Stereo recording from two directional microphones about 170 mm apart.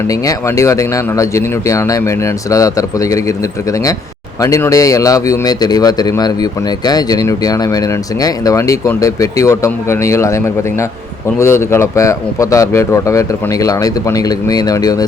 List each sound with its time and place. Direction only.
0.1 s speech: 20° left (ahead or behind)